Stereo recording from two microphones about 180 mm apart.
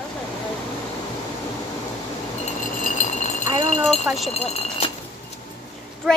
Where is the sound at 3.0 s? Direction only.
40° left (ahead or behind).